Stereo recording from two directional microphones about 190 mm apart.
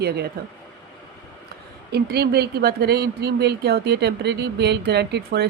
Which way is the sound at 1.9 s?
55° right (ahead or behind).